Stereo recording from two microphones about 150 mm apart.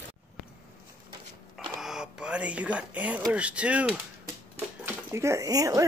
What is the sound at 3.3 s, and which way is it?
Speech, 10° right (ahead or behind).